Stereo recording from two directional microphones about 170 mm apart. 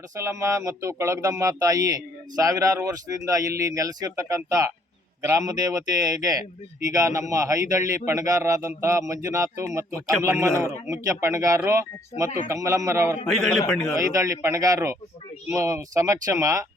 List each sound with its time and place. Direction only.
0.2 s speech: 15° right (ahead or behind)
13.2 s a man's voice: centre (ahead or behind)
13.9 s speech: 20° right (ahead or behind)